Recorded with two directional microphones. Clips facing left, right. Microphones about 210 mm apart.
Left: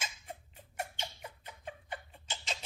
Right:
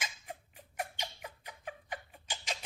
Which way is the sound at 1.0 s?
10° right (ahead or behind).